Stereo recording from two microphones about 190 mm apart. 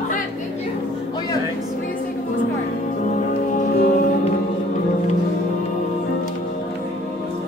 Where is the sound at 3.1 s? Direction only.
40° left (ahead or behind).